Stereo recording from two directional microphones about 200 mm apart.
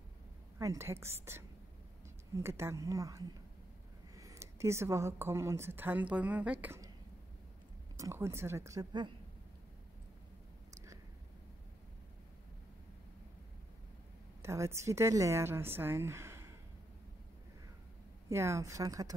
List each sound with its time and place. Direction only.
0.6 s a woman's voice: 15° right (ahead or behind)
8.0 s a woman's voice: 15° right (ahead or behind)
14.4 s a woman's voice: 15° right (ahead or behind)
18.3 s a woman's voice: 15° right (ahead or behind)